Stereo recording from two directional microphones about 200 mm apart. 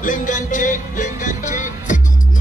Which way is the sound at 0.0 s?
40° left (ahead or behind).